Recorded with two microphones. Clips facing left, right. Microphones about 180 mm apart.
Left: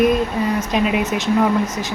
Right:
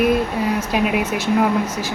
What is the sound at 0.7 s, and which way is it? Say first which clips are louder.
Speech: left 1 dB; 5° right (ahead or behind).